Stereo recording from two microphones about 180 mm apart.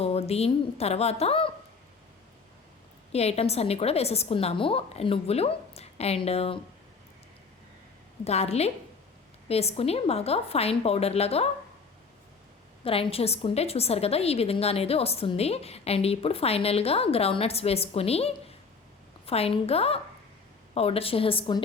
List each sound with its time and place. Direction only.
0.0 s a woman's voice: 35° left (ahead or behind)
3.1 s a woman's voice: 35° left (ahead or behind)
8.2 s a woman's voice: 35° left (ahead or behind)
12.8 s a woman's voice: 30° left (ahead or behind)